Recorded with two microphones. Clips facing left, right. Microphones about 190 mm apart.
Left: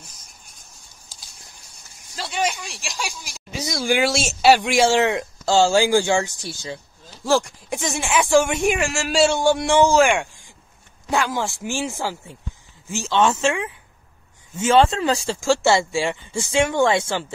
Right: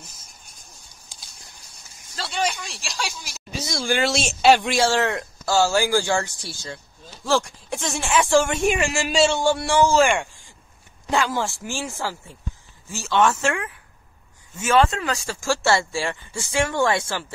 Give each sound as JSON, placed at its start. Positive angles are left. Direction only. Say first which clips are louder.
{"t": 2.1, "sound": "speech", "louder": "left 1 dB", "side_deg": 15}
{"t": 2.9, "sound": "a man's voice", "louder": "even", "side_deg": 0}
{"t": 3.6, "sound": "speech", "louder": "left 3 dB", "side_deg": 15}
{"t": 4.6, "sound": "speech", "louder": "left 3 dB", "side_deg": 15}
{"t": 8.7, "sound": "a man's voice", "louder": "even", "side_deg": 0}
{"t": 9.2, "sound": "speech", "louder": "left 3 dB", "side_deg": 15}